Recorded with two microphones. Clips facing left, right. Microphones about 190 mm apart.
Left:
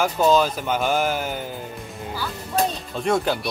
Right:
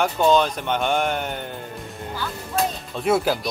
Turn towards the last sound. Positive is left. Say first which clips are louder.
# right 1 dB
turn(degrees=-5)  # may be behind; listen again after turning